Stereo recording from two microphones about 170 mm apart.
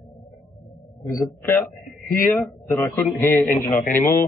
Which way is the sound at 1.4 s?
15° left (ahead or behind).